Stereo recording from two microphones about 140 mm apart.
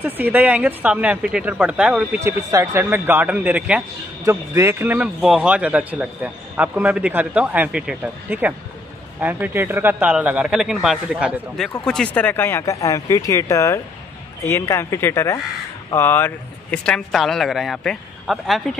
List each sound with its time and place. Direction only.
0.0 s a man's voice: 15° right (ahead or behind)
2.1 s a man's voice: 20° right (ahead or behind); by 11.3 s 5° right (ahead or behind)
11.8 s speech: 5° left (ahead or behind)